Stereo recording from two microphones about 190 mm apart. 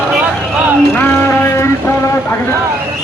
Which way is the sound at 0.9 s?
10° left (ahead or behind).